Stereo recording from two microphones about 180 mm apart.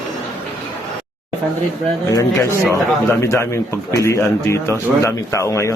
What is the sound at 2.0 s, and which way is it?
Speech, 15° left (ahead or behind).